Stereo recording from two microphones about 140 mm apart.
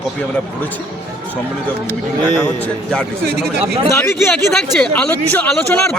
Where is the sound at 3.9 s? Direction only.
15° left (ahead or behind).